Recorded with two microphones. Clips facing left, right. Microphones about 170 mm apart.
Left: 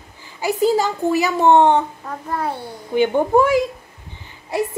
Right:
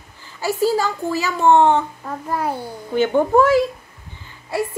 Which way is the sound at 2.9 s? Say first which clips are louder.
Even; 15° left (ahead or behind).